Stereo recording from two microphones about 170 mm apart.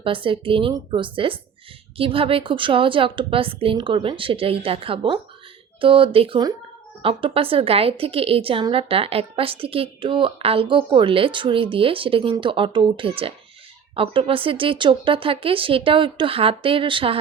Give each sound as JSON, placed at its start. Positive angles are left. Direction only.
{"t": 0.0, "sound": "a woman's voice", "side_deg": -30}